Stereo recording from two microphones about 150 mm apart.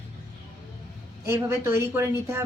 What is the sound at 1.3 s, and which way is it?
Speech, 20° right (ahead or behind).